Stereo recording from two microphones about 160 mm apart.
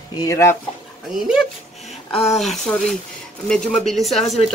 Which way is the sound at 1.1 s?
Centre (ahead or behind).